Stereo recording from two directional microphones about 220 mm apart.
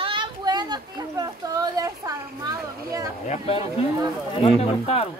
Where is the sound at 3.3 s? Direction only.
30° left (ahead or behind).